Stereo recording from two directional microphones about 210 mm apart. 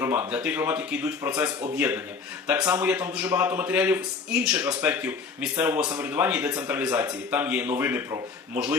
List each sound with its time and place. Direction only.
0.0 s a man's voice: 10° right (ahead or behind)
5.8 s speech: 20° right (ahead or behind)
6.1 s a man's voice: 10° right (ahead or behind)